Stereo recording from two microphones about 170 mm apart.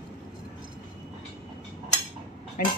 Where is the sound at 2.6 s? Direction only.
55° left (ahead or behind).